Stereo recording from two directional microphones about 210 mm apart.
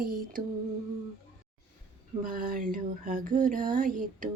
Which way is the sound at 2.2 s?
40° right (ahead or behind).